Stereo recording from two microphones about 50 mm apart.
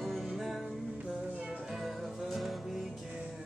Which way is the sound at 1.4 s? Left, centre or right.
Centre.